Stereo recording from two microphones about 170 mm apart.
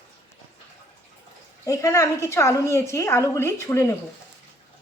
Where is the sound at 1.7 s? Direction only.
20° left (ahead or behind).